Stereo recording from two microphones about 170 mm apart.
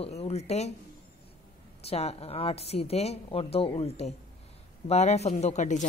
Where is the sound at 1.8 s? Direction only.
35° left (ahead or behind).